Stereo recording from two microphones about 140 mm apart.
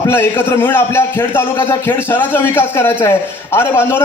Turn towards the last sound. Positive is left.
turn(degrees=15)  # may be behind; listen again after turning